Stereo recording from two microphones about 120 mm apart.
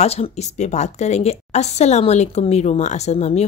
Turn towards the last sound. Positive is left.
turn(degrees=65)  # may be behind; listen again after turning